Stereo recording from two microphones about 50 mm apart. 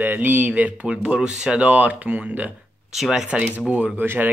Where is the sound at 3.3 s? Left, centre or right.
Right.